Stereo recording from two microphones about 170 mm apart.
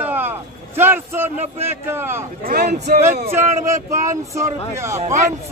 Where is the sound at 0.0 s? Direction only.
10° right (ahead or behind).